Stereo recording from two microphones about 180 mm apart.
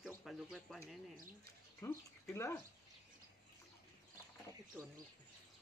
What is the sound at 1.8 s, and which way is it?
Speech, 15° left (ahead or behind).